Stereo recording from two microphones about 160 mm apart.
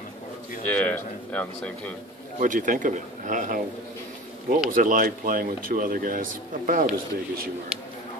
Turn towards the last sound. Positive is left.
turn(degrees=-55)  # may be behind; listen again after turning